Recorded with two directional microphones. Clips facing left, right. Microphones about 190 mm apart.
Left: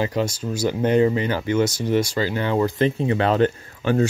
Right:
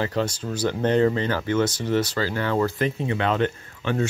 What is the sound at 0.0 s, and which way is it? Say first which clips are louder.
Speech: left 2 dB; 10° left (ahead or behind).